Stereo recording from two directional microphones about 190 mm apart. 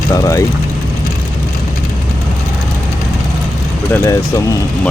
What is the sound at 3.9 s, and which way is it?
Speech, 15° left (ahead or behind).